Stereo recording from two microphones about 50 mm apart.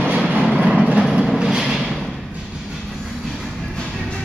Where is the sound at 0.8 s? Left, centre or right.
Centre.